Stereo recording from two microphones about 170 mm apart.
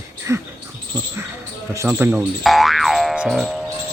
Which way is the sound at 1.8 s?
10° right (ahead or behind).